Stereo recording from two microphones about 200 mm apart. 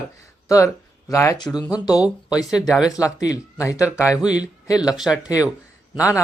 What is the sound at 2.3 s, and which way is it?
Speech, 5° right (ahead or behind).